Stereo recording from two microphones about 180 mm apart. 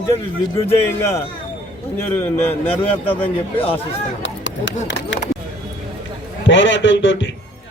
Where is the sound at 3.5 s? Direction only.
30° left (ahead or behind).